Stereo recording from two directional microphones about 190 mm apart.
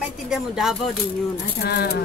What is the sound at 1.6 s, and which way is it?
Speech, 60° left (ahead or behind).